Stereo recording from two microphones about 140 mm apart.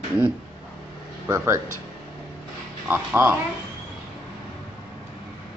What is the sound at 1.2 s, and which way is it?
Speech, 15° right (ahead or behind).